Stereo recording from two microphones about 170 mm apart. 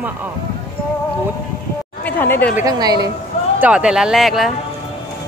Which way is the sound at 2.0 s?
10° left (ahead or behind).